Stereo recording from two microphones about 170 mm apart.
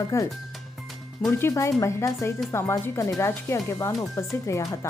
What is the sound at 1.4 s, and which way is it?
A woman's voice, 15° left (ahead or behind).